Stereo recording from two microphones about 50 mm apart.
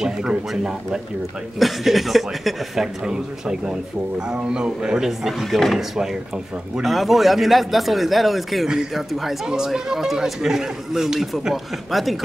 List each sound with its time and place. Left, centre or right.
0.0 s speech: centre
1.6 s speech: centre
3.0 s speech: centre